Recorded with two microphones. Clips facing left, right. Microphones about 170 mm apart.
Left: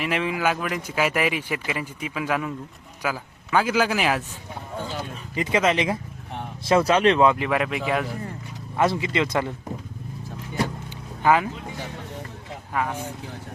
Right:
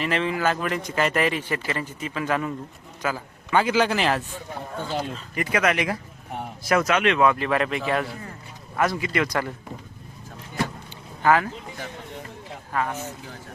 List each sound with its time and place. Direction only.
0.0 s a man's voice: 10° left (ahead or behind)
4.8 s speech: 15° left (ahead or behind); by 7.3 s 35° left (ahead or behind)
7.3 s speech: 15° left (ahead or behind)
8.7 s speech: 25° left (ahead or behind)
11.2 s speech: 15° left (ahead or behind)